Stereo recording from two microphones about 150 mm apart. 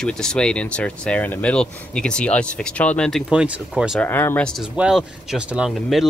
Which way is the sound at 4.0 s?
15° left (ahead or behind).